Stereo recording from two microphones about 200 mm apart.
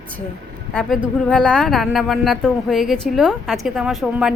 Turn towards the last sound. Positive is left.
turn(degrees=0)  # may be behind; listen again after turning